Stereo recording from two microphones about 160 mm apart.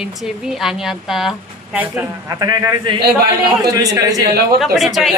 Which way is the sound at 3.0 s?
90° right.